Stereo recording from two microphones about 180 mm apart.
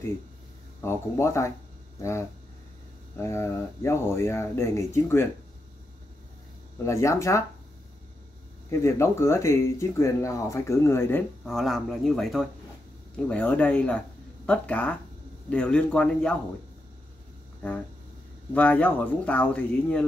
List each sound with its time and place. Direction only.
0.7 s speech: 15° left (ahead or behind)
6.8 s speech: 15° left (ahead or behind)
8.6 s speech: 15° left (ahead or behind)
11.5 s speech: centre (ahead or behind)
17.6 s speech: 10° left (ahead or behind)